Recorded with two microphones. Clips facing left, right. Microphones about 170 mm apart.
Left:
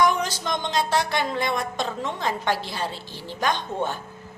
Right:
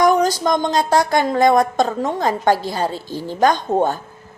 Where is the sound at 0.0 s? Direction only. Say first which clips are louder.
Right 7 dB; 40° right (ahead or behind).